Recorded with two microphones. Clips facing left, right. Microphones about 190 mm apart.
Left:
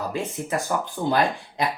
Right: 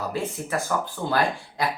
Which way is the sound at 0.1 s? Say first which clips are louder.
Left 1 dB; 15° left (ahead or behind).